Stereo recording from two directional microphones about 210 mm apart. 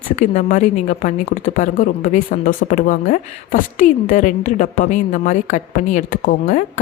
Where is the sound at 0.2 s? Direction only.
35° left (ahead or behind).